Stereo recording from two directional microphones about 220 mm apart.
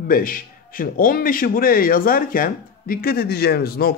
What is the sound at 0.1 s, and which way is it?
A man's voice, 40° left (ahead or behind).